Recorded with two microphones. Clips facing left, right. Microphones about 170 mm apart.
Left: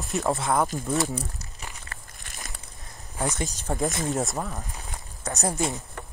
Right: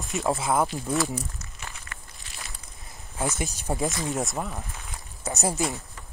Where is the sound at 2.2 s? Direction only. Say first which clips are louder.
Left 2 dB; 45° left (ahead or behind).